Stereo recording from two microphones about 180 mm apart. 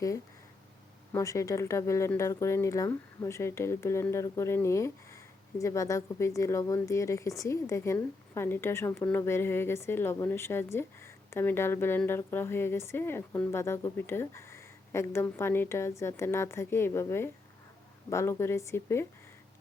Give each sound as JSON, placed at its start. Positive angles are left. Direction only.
{"t": 1.1, "sound": "a woman's voice", "side_deg": 15}